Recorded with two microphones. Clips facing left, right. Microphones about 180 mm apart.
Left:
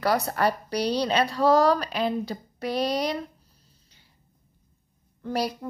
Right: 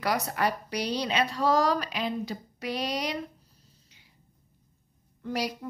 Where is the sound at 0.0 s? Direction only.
35° left (ahead or behind).